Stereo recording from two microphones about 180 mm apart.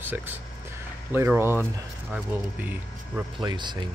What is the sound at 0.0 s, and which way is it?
Speech, 10° right (ahead or behind).